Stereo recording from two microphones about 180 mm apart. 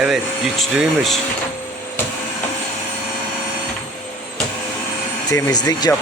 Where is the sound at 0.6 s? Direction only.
Centre (ahead or behind).